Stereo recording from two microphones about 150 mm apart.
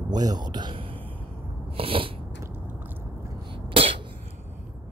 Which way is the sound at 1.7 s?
35° right (ahead or behind).